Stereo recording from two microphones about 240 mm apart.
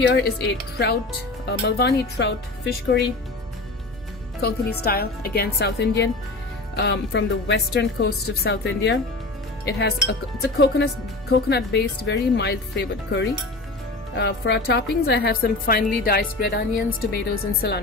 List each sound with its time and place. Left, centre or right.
1.5 s speech: left
4.4 s a woman's voice: left